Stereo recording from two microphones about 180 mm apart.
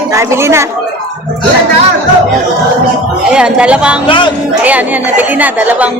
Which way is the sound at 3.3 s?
5° right (ahead or behind).